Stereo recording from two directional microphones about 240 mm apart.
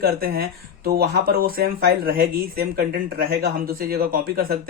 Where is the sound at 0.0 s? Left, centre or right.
Right.